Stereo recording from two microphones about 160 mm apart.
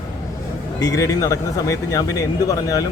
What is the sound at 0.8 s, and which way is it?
Speech, 20° left (ahead or behind).